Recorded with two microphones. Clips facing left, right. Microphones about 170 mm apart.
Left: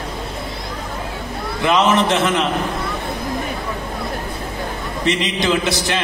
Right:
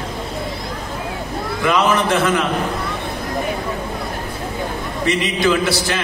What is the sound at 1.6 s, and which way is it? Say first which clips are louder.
Speech: left 1 dB; 20° left (ahead or behind).